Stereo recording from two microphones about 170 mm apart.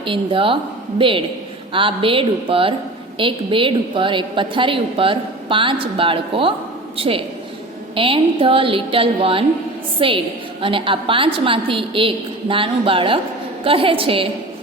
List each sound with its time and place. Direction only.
0.0 s a woman's voice: 30° right (ahead or behind)